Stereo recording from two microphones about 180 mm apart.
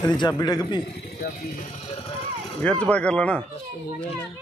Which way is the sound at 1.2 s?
55° left (ahead or behind).